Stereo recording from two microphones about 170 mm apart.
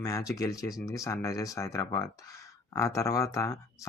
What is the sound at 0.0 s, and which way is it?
Speech, 20° left (ahead or behind).